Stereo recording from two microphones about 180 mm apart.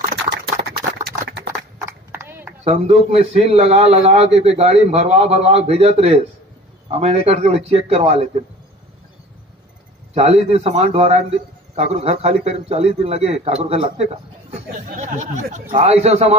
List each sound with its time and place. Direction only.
0.3 s a sound: 65° right (ahead or behind)
1.9 s horse: 10° right (ahead or behind)
2.6 s a man's voice: 35° right (ahead or behind)
10.1 s a man's voice: 35° right (ahead or behind)